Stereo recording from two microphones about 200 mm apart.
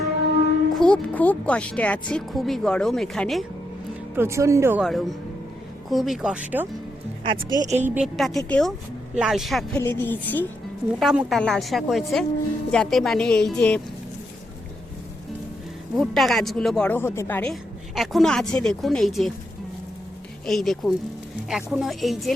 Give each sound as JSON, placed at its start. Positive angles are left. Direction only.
{"t": 0.7, "sound": "speech", "side_deg": 5}
{"t": 4.1, "sound": "speech", "side_deg": -10}
{"t": 7.3, "sound": "a woman's voice", "side_deg": -20}
{"t": 7.8, "sound": "speech", "side_deg": -10}
{"t": 9.8, "sound": "a woman's voice", "side_deg": 10}
{"t": 11.0, "sound": "speech", "side_deg": -5}
{"t": 16.0, "sound": "speech", "side_deg": 0}
{"t": 20.5, "sound": "speech", "side_deg": 0}